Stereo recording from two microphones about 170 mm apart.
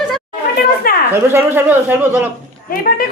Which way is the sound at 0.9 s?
60° left (ahead or behind).